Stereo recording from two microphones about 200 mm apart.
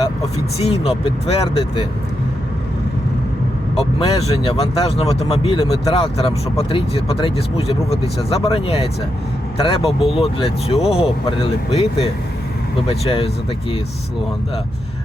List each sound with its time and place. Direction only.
0.9 s speech: 30° left (ahead or behind)
3.8 s speech: 30° left (ahead or behind)